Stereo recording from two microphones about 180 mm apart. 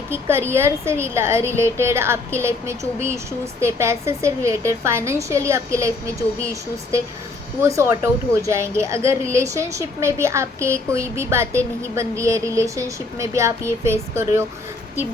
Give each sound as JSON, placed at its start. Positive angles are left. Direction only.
{"t": 0.1, "sound": "a woman's voice", "side_deg": -15}